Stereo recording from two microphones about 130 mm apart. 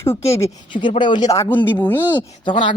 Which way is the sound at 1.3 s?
20° left (ahead or behind).